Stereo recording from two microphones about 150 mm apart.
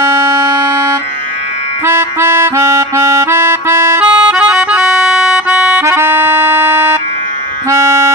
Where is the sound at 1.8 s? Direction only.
15° right (ahead or behind).